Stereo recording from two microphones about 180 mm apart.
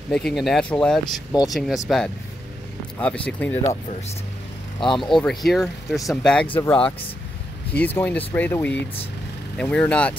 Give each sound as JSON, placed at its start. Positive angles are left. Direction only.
{"t": 0.1, "sound": "speech", "side_deg": 0}
{"t": 3.0, "sound": "speech", "side_deg": 5}
{"t": 4.7, "sound": "speech", "side_deg": 25}
{"t": 5.0, "sound": "speech", "side_deg": 0}